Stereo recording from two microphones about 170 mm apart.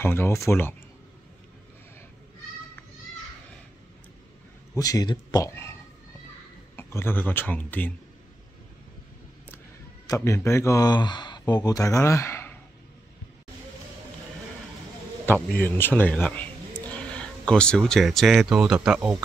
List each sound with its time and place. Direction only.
0.0 s speech: 15° left (ahead or behind)
4.7 s speech: 20° left (ahead or behind)
6.8 s speech: 15° left (ahead or behind)
10.0 s speech: 15° left (ahead or behind)
15.2 s a man's voice: 10° left (ahead or behind); by 19.2 s 5° right (ahead or behind)